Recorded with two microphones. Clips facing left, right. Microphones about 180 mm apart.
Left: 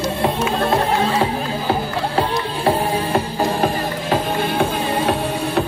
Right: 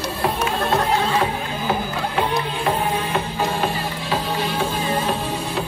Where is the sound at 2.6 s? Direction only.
30° left (ahead or behind).